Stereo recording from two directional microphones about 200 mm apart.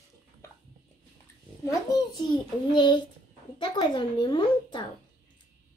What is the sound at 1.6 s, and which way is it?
A child's voice, 20° left (ahead or behind).